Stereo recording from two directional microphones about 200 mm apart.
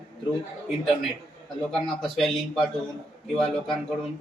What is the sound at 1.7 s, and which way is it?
Speech, centre (ahead or behind).